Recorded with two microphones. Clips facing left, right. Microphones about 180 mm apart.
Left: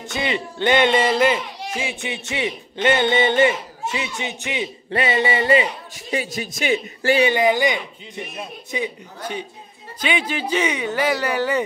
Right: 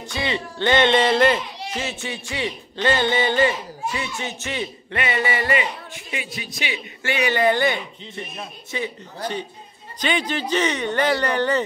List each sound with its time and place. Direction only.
0.1 s speech: 20° left (ahead or behind)
4.9 s a man's voice: 30° left (ahead or behind)
7.2 s speech: 15° left (ahead or behind)